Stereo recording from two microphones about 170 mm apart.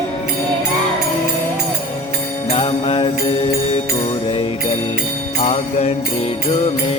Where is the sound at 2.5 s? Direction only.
35° left (ahead or behind).